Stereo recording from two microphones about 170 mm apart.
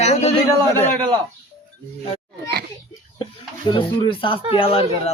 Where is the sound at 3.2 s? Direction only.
30° left (ahead or behind).